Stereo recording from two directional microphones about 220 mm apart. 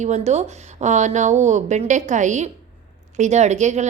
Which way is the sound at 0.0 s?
30° right (ahead or behind).